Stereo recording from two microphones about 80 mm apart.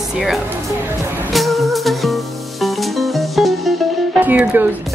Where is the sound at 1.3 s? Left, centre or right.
Centre.